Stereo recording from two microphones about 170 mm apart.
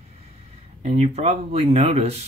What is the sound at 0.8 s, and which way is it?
Speech, 40° right (ahead or behind).